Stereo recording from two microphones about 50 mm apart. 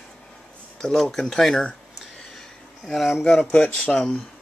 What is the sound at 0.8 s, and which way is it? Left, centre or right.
Speech, centre.